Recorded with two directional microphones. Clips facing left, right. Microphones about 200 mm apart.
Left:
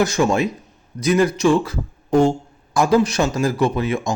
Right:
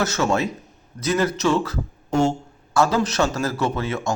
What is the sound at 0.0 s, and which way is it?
A man's voice, 15° left (ahead or behind).